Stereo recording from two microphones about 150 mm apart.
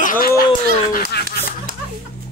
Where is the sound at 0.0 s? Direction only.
65° left (ahead or behind).